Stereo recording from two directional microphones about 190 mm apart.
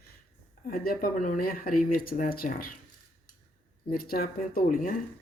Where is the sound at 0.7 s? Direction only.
50° left (ahead or behind).